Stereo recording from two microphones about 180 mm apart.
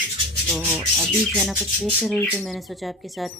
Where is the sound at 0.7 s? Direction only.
5° right (ahead or behind).